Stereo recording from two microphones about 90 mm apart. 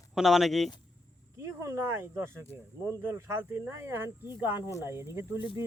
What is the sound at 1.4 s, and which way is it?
Speech, 35° right (ahead or behind).